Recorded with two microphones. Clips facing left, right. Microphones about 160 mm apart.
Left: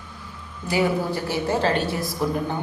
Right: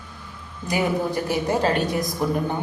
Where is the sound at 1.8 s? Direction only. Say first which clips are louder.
Right 2 dB; 15° right (ahead or behind).